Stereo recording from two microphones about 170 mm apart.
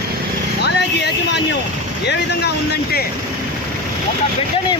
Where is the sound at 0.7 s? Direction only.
80° left.